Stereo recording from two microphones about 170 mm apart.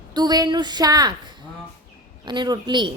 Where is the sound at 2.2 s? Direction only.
25° right (ahead or behind).